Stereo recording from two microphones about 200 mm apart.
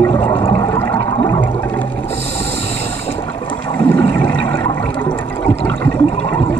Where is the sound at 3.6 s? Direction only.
10° left (ahead or behind).